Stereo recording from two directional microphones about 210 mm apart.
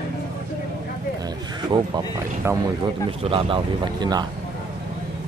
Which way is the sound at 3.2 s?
25° right (ahead or behind).